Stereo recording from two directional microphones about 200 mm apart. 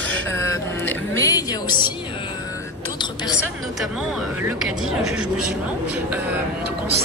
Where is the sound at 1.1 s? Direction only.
15° left (ahead or behind).